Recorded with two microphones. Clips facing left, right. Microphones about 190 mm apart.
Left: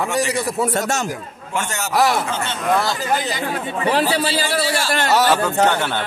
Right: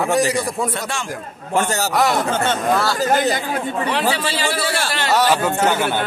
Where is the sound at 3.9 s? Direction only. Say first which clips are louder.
Left 5 dB; 40° left (ahead or behind).